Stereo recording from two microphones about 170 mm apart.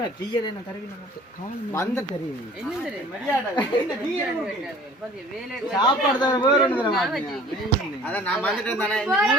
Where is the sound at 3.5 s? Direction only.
25° left (ahead or behind).